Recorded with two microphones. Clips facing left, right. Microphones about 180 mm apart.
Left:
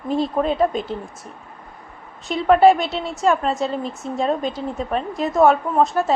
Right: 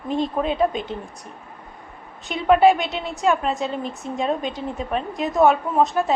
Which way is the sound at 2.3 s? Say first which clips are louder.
Left 2 dB; 5° right (ahead or behind).